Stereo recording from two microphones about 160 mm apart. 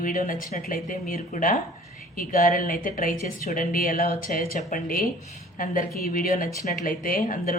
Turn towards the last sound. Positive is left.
turn(degrees=60)  # may be behind; listen again after turning